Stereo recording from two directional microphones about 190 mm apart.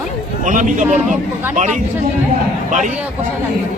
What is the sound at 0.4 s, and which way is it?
Speech, 40° right (ahead or behind).